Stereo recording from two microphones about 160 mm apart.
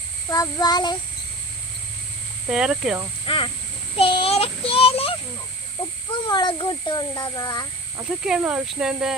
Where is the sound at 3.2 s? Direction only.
35° left (ahead or behind).